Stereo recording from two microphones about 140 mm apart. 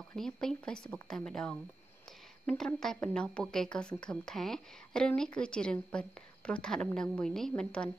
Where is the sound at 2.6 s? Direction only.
5° left (ahead or behind).